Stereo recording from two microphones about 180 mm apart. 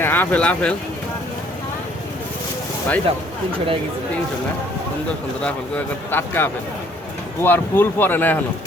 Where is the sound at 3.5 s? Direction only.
30° right (ahead or behind).